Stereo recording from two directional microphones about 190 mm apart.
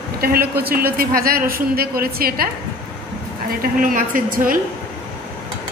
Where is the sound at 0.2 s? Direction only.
55° right (ahead or behind).